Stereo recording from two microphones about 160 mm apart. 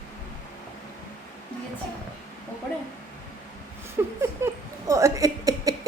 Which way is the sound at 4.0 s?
15° right (ahead or behind).